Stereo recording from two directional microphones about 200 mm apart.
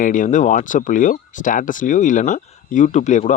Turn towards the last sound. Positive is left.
turn(degrees=35)  # may be behind; listen again after turning